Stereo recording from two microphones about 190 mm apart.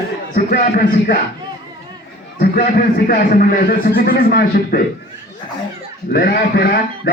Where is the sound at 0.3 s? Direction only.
45° left (ahead or behind).